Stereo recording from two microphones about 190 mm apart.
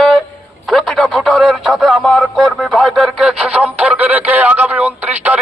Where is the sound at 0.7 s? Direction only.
Centre (ahead or behind).